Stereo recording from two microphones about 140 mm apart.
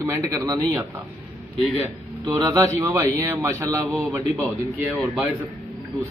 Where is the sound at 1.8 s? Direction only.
25° right (ahead or behind).